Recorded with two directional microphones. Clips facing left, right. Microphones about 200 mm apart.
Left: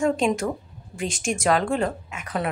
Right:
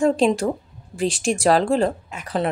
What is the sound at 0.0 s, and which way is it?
Speech, 35° right (ahead or behind).